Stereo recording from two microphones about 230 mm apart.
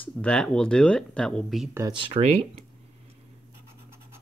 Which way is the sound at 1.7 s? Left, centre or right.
Centre.